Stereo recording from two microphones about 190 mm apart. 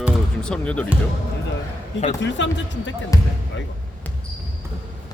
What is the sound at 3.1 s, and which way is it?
Speech, 20° left (ahead or behind).